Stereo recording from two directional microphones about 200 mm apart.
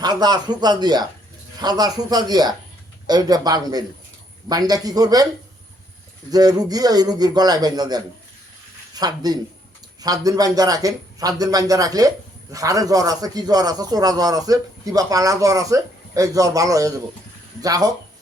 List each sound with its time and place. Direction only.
0.0 s a man's voice: 20° right (ahead or behind)
6.3 s a man's voice: 20° right (ahead or behind)